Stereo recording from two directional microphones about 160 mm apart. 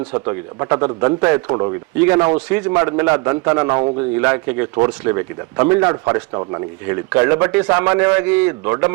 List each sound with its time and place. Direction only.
0.1 s speech: 20° right (ahead or behind)
2.2 s speech: 15° right (ahead or behind)